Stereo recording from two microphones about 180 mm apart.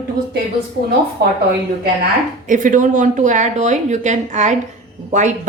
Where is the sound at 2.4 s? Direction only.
45° right (ahead or behind).